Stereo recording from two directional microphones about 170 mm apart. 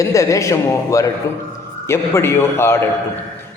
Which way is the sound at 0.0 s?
20° left (ahead or behind).